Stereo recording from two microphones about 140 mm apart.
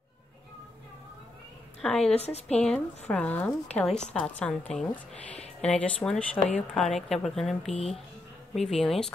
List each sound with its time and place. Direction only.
1.8 s speech: 5° left (ahead or behind)
2.1 s speech: 50° left (ahead or behind)
2.6 s speech: 10° left (ahead or behind)